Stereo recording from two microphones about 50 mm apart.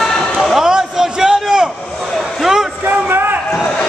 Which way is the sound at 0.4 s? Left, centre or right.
Centre.